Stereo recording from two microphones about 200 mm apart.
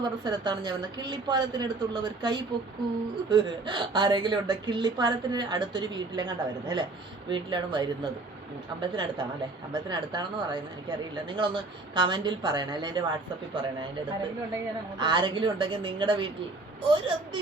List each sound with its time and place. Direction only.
0.0 s a woman's voice: 20° right (ahead or behind)